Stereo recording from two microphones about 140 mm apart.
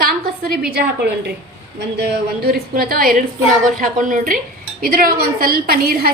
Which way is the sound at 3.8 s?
75° right (ahead or behind).